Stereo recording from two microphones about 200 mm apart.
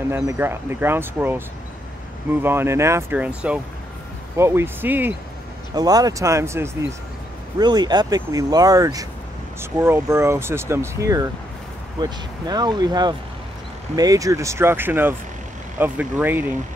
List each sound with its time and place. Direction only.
0.1 s speech: 10° right (ahead or behind)
2.4 s speech: 10° right (ahead or behind)